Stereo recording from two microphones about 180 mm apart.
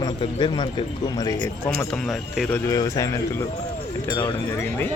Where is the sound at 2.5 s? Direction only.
20° left (ahead or behind).